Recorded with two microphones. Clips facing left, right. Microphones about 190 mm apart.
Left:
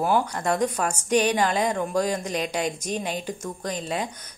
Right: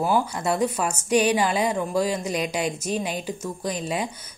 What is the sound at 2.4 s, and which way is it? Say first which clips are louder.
Speech: right 1 dB; 40° left (ahead or behind).